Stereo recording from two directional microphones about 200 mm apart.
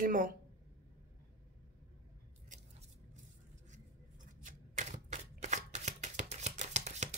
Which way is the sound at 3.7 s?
40° right (ahead or behind).